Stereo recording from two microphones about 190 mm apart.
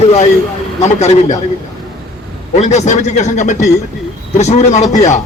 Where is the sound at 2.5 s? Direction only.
35° left (ahead or behind).